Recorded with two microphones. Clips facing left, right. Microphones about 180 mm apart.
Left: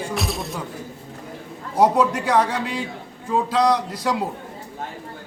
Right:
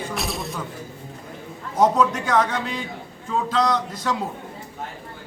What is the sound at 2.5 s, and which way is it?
A man's voice, 10° left (ahead or behind).